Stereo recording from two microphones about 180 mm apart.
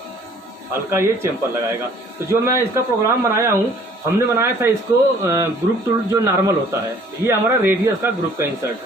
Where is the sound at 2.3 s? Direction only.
15° right (ahead or behind).